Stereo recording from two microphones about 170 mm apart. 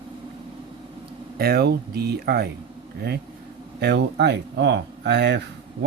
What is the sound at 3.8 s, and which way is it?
Speech, 80° right.